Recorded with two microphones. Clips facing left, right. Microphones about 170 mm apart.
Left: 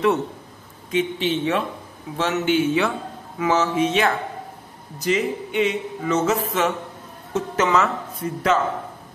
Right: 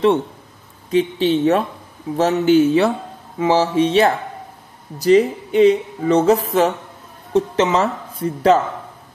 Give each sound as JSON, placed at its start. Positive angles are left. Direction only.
{"t": 0.8, "sound": "speech", "side_deg": -35}